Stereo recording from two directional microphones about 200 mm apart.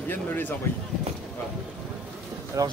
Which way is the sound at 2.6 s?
15° right (ahead or behind).